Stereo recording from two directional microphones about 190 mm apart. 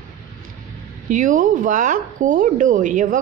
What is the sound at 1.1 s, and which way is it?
Speech, 40° right (ahead or behind).